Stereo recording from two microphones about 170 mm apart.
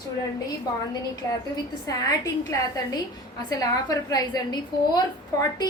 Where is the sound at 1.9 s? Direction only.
20° left (ahead or behind).